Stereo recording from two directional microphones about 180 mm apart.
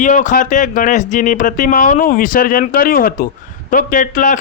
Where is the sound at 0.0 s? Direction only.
45° left (ahead or behind).